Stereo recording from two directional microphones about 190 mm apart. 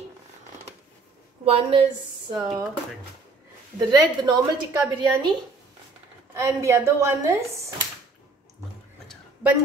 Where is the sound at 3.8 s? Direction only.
25° right (ahead or behind).